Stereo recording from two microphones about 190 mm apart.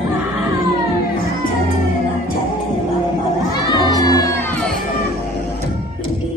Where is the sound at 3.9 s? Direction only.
20° left (ahead or behind).